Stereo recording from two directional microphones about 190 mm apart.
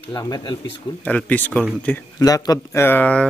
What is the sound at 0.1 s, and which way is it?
Speech, 20° left (ahead or behind).